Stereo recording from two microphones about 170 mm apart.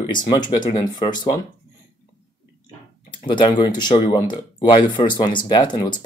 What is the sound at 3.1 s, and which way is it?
Speech, 30° left (ahead or behind).